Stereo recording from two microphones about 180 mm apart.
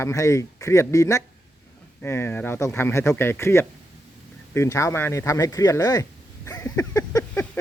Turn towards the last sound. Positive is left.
turn(degrees=15)  # may be behind; listen again after turning